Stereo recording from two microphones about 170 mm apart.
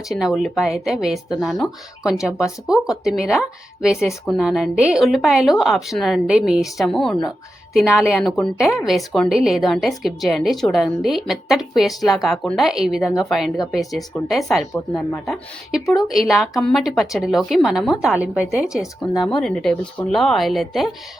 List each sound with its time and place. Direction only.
0.1 s a woman's voice: centre (ahead or behind)